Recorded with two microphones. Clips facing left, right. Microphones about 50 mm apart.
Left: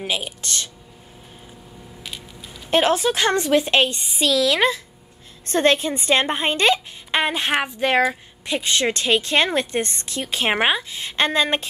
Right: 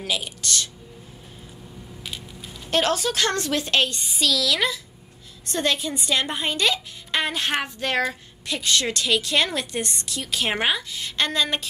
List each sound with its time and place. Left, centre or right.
0.4 s a woman's voice: left
2.0 s a sound: centre
2.7 s a woman's voice: left